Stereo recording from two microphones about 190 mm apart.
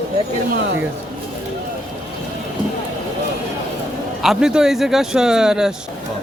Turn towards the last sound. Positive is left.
turn(degrees=-5)  # may be behind; listen again after turning